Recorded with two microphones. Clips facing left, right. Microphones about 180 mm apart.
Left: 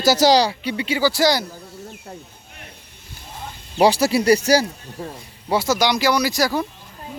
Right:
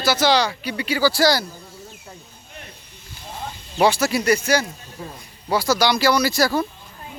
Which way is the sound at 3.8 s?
35° left (ahead or behind).